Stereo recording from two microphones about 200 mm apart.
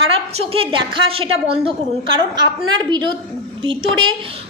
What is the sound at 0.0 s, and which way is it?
A woman's voice, 30° right (ahead or behind).